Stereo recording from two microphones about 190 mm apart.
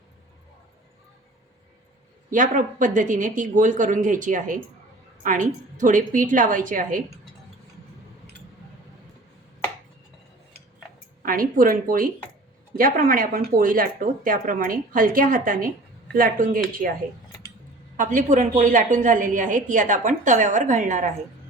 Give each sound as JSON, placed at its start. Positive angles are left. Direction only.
{"t": 2.3, "sound": "speech", "side_deg": -45}
{"t": 11.3, "sound": "speech", "side_deg": -45}
{"t": 17.9, "sound": "speech", "side_deg": -40}